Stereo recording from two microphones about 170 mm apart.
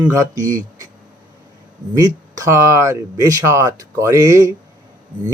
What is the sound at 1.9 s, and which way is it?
Speech, 20° right (ahead or behind).